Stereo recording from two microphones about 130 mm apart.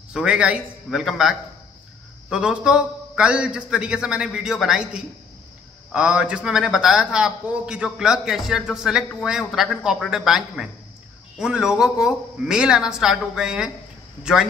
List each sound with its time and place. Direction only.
0.1 s a man's voice: 10° right (ahead or behind)